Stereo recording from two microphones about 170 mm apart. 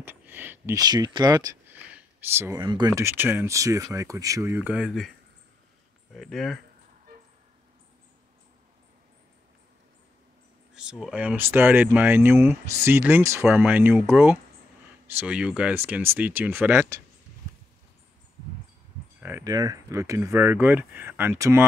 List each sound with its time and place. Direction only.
0.0 s speech: 10° right (ahead or behind)
1.9 s a sound: 10° right (ahead or behind)
2.6 s speech: 25° right (ahead or behind)
2.9 s speech: 15° right (ahead or behind)
6.1 s speech: centre (ahead or behind)
10.7 s speech: 5° right (ahead or behind)
19.2 s speech: 20° right (ahead or behind)